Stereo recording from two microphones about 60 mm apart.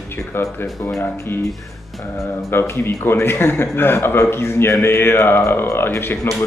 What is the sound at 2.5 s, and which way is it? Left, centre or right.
A man's voice, left.